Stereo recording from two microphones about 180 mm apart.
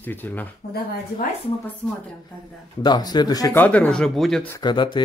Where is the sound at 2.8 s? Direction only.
25° left (ahead or behind).